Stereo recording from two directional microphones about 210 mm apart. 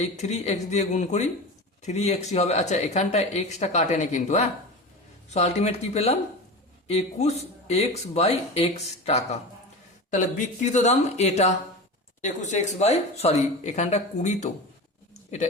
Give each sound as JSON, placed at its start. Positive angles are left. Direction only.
{"t": 0.0, "sound": "speech", "side_deg": 30}